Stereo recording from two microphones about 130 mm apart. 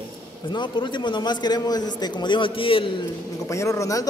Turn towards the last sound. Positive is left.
turn(degrees=25)  # may be behind; listen again after turning